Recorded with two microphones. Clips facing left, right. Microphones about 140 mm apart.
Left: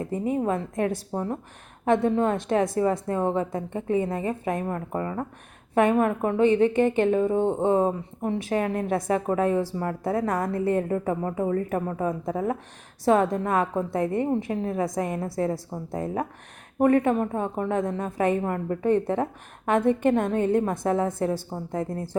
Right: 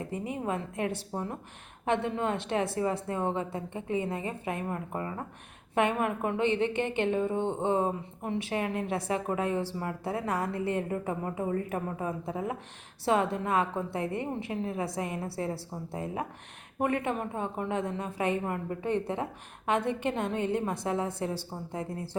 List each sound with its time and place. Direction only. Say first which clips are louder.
0.1 s a woman's voice: left 8 dB; 40° left (ahead or behind)